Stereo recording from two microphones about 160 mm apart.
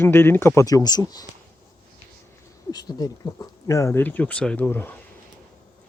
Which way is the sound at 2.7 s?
25° left (ahead or behind).